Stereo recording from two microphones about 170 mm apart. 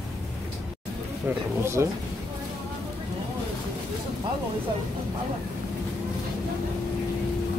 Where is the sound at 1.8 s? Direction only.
15° right (ahead or behind).